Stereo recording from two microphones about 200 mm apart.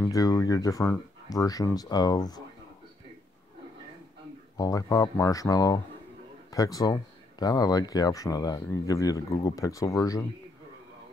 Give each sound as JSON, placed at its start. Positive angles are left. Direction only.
{"t": 0.0, "sound": "speech", "side_deg": 15}
{"t": 4.6, "sound": "speech", "side_deg": 20}